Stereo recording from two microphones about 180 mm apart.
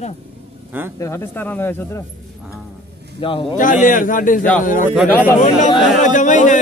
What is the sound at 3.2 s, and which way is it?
Speech, 30° left (ahead or behind).